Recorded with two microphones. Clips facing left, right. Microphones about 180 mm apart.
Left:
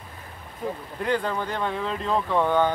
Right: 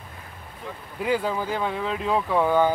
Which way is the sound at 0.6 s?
40° left (ahead or behind).